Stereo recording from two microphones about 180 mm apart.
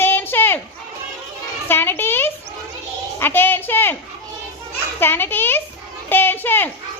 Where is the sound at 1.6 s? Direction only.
10° left (ahead or behind).